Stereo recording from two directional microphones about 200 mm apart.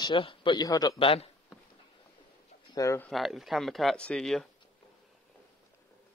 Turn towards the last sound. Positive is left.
turn(degrees=0)  # may be behind; listen again after turning